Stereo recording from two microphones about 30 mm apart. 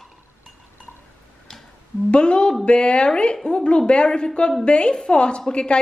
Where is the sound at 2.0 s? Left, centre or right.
Left.